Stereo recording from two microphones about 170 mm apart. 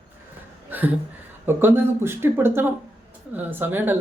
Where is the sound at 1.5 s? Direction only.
15° right (ahead or behind).